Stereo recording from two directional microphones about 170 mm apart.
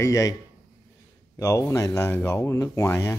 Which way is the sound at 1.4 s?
15° left (ahead or behind).